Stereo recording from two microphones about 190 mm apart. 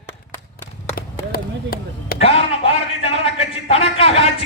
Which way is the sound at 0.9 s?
55° left (ahead or behind).